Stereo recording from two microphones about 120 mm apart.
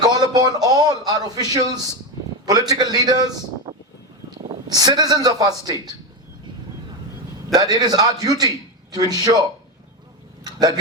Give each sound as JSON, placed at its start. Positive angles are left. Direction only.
{"t": 0.0, "sound": "a man's voice", "side_deg": -35}
{"t": 4.7, "sound": "a man's voice", "side_deg": -35}
{"t": 7.5, "sound": "a man's voice", "side_deg": -30}